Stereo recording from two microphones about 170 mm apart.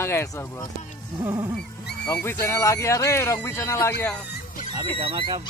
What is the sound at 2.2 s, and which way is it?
Speech, 15° left (ahead or behind).